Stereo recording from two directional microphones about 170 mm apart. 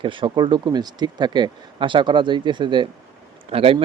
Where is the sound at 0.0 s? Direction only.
30° right (ahead or behind).